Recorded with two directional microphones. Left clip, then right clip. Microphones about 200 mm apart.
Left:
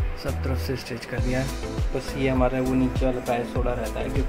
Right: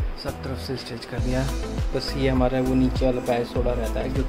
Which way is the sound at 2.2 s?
20° right (ahead or behind).